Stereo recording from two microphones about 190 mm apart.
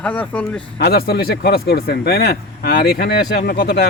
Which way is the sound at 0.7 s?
55° left (ahead or behind).